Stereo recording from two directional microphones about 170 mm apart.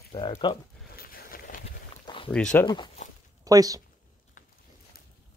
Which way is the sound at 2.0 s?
30° left (ahead or behind).